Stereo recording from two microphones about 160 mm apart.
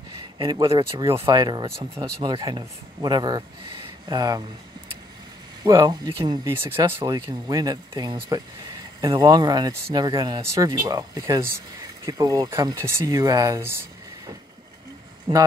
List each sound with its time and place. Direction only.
0.4 s speech: 25° right (ahead or behind)
5.6 s speech: 20° right (ahead or behind)